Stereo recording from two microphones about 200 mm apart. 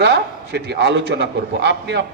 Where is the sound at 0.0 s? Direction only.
55° right (ahead or behind).